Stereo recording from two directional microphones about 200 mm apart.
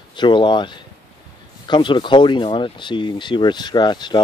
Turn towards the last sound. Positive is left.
turn(degrees=20)  # may be behind; listen again after turning